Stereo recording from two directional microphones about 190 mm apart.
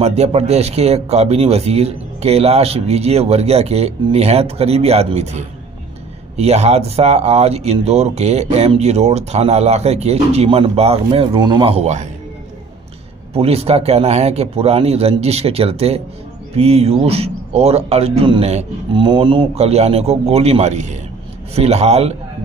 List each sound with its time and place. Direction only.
0.0 s speech: 35° right (ahead or behind)
13.3 s speech: 30° right (ahead or behind)